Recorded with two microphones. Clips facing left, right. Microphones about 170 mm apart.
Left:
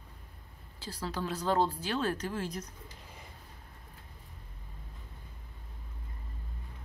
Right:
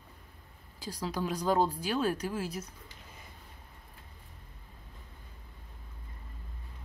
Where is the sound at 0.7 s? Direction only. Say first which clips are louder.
Right 2 dB; 15° right (ahead or behind).